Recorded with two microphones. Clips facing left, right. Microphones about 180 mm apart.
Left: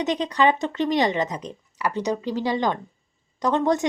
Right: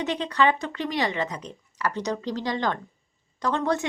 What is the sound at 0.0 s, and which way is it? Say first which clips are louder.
A woman's voice: left 3 dB; 15° left (ahead or behind).